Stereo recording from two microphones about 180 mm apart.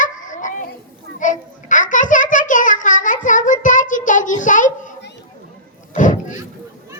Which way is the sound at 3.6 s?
45° left (ahead or behind).